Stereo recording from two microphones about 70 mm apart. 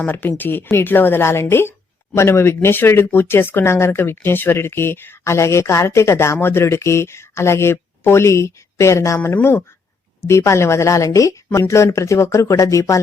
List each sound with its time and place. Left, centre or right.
0.0 s speech: left
5.2 s speech: left